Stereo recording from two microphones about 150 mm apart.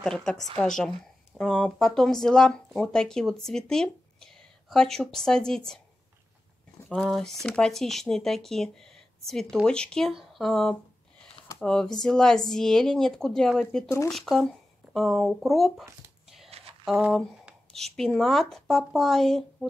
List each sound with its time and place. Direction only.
0.0 s speech: 5° left (ahead or behind)
6.9 s speech: 5° left (ahead or behind)
13.8 s speech: 20° left (ahead or behind)
14.1 s speech: centre (ahead or behind)
16.4 s a sound: 40° right (ahead or behind)
16.8 s speech: 5° right (ahead or behind)